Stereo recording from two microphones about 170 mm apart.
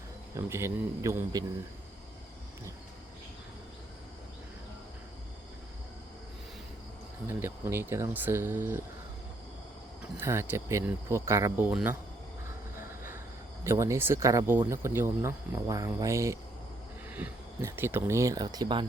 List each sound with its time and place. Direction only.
0.3 s speech: 15° right (ahead or behind)
7.3 s speech: 15° right (ahead or behind)
10.0 s speech: 15° right (ahead or behind)
13.7 s speech: 15° right (ahead or behind)